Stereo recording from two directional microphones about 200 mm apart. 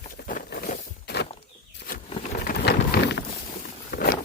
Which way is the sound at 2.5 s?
50° left (ahead or behind).